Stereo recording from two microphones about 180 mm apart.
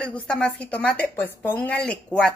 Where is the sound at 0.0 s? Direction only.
5° left (ahead or behind).